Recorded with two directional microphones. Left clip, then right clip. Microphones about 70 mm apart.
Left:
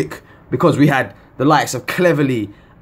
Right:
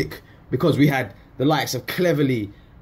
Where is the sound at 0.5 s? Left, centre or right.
Left.